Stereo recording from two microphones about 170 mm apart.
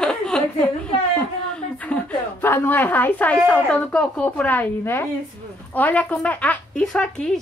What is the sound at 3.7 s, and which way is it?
A woman's voice, 10° left (ahead or behind).